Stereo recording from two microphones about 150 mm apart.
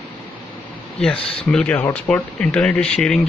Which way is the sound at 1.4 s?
10° left (ahead or behind).